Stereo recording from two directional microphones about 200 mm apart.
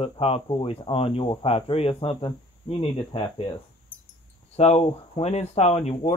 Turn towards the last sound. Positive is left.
turn(degrees=30)  # may be behind; listen again after turning